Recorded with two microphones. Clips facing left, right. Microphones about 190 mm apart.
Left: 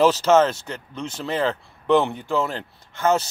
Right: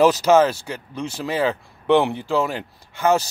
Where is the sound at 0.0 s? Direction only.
10° right (ahead or behind).